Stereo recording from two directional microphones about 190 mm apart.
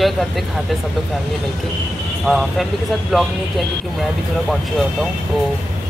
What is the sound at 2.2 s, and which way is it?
Speech, centre (ahead or behind).